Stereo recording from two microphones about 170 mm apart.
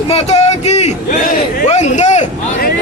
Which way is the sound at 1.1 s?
55° left (ahead or behind).